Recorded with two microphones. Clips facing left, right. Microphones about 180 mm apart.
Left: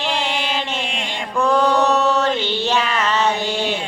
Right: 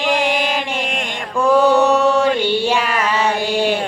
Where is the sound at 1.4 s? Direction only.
10° right (ahead or behind).